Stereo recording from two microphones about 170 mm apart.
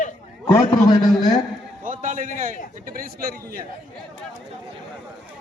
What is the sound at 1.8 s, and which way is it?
A man's voice, 50° right (ahead or behind).